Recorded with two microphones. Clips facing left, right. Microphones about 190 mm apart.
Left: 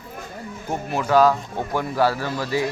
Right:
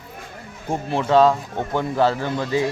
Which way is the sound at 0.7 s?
30° right (ahead or behind).